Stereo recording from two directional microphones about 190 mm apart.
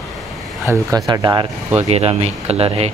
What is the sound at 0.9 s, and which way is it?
Speech, 20° right (ahead or behind).